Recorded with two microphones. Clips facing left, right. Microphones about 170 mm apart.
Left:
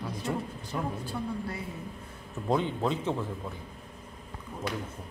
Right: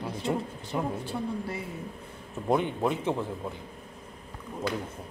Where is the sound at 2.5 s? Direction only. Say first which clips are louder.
Right 2 dB; 15° right (ahead or behind).